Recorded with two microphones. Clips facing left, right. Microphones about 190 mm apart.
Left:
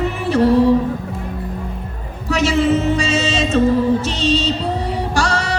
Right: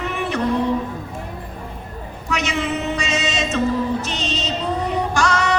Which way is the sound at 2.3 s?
35° left (ahead or behind).